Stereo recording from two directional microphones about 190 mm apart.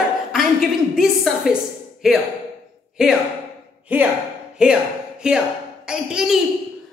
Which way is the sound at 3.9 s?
5° right (ahead or behind).